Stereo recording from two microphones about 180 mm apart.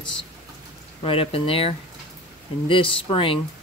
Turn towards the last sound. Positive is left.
turn(degrees=30)  # may be behind; listen again after turning